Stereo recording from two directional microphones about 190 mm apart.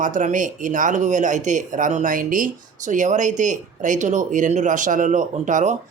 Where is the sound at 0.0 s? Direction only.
40° right (ahead or behind).